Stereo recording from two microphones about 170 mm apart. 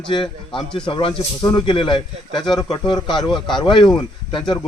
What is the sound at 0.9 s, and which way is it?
Speech, 30° left (ahead or behind).